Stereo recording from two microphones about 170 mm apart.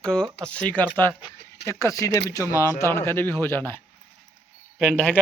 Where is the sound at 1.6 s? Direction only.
15° left (ahead or behind).